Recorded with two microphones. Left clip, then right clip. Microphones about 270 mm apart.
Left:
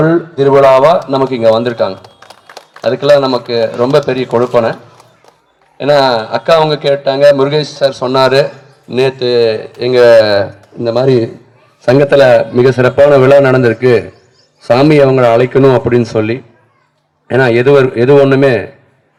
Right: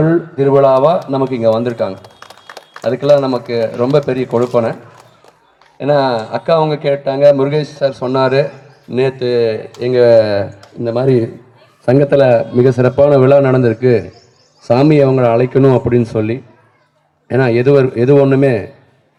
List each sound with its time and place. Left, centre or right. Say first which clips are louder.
0.0 s a man's voice: left 3 dB; left
10.0 s a man's voice: left 4 dB; left